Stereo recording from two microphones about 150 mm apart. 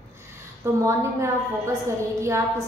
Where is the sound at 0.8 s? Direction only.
20° right (ahead or behind).